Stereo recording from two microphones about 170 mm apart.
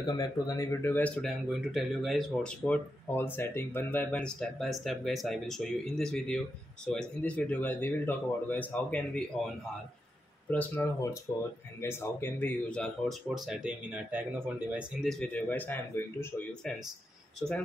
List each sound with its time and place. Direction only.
0.0 s speech: 20° left (ahead or behind)
10.5 s speech: 10° left (ahead or behind)